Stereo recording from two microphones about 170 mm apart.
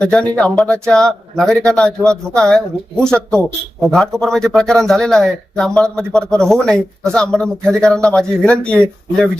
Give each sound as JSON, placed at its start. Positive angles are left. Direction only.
{"t": 0.0, "sound": "speech", "side_deg": 5}